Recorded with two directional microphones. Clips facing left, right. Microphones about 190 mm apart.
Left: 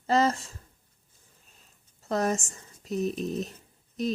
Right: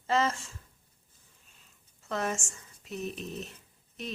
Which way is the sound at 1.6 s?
40° left (ahead or behind).